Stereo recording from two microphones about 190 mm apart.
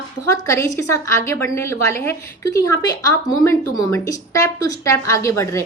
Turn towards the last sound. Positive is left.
turn(degrees=15)  # may be behind; listen again after turning